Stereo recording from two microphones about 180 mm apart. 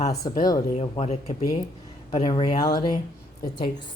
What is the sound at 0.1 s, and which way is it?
Speech, 20° left (ahead or behind).